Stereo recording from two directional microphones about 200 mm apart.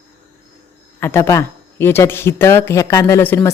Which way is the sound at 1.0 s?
15° left (ahead or behind).